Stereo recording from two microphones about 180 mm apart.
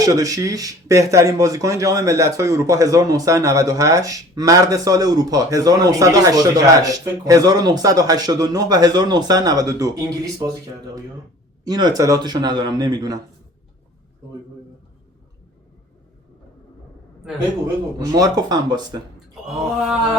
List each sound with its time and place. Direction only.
0.0 s speech: 20° right (ahead or behind)
11.6 s speech: 20° right (ahead or behind)
18.1 s speech: 20° right (ahead or behind)
19.5 s a sound: 5° right (ahead or behind)